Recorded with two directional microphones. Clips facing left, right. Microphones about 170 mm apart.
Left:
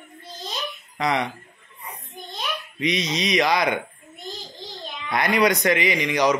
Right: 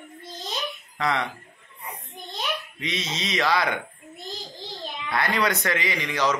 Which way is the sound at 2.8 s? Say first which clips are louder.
Left 7 dB; 15° left (ahead or behind).